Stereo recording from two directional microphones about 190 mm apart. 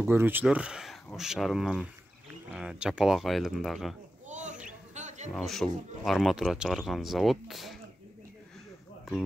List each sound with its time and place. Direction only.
0.0 s speech: 10° right (ahead or behind)
4.3 s a sound: 40° right (ahead or behind)
5.3 s speech: centre (ahead or behind)